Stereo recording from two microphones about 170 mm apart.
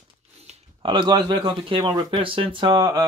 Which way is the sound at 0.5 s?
30° right (ahead or behind).